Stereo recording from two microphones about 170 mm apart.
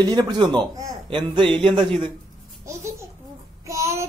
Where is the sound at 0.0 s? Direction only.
25° right (ahead or behind).